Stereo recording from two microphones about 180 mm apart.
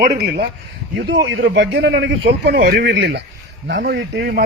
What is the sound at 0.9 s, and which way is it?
A man's voice, 85° right.